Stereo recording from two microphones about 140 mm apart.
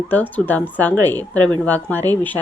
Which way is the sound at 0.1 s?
10° left (ahead or behind).